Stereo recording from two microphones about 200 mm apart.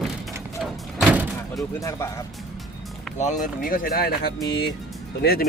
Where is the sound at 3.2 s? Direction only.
40° left (ahead or behind).